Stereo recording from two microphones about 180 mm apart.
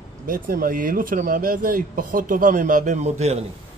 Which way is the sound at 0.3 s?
50° right (ahead or behind).